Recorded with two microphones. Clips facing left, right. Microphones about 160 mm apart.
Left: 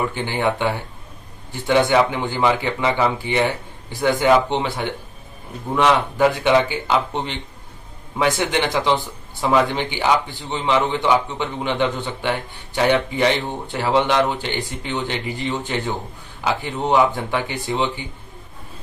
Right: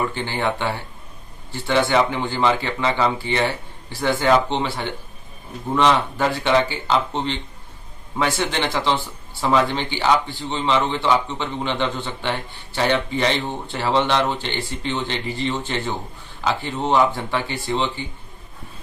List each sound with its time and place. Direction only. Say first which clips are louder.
0.1 s a man's voice: left 2 dB; 15° left (ahead or behind)